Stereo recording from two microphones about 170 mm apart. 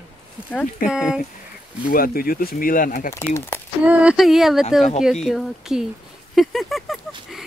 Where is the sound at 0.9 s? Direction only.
5° right (ahead or behind).